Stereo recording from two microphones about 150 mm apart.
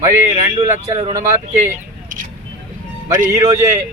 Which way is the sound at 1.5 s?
55° right (ahead or behind).